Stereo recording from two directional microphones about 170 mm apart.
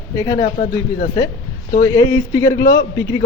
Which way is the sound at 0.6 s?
55° left (ahead or behind).